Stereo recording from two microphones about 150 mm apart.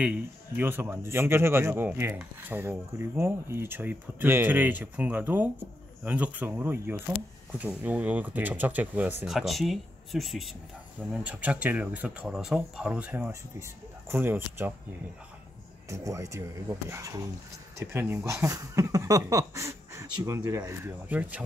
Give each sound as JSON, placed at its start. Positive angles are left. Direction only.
{"t": 0.0, "sound": "a man's voice", "side_deg": -10}
{"t": 15.9, "sound": "speech", "side_deg": -20}